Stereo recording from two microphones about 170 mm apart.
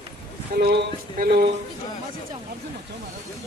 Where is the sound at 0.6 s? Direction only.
75° right (ahead or behind).